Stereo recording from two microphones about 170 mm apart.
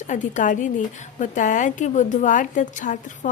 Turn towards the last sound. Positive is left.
turn(degrees=50)  # may be behind; listen again after turning